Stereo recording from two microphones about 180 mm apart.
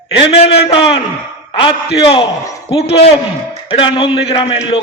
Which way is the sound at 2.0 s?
30° left (ahead or behind).